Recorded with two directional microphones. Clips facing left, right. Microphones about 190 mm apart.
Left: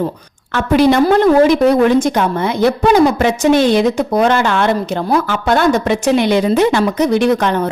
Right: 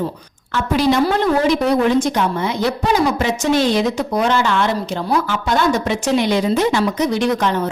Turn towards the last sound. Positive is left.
turn(degrees=55)  # may be behind; listen again after turning